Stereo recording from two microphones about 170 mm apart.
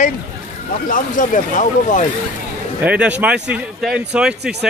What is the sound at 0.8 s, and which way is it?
Speech, 50° left (ahead or behind).